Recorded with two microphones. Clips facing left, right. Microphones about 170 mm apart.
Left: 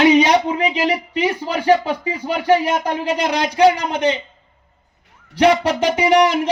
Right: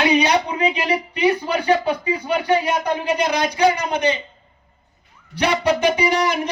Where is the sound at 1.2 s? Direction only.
90° left.